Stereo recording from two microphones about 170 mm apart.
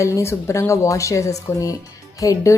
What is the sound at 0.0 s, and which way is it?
A woman's voice, 15° left (ahead or behind).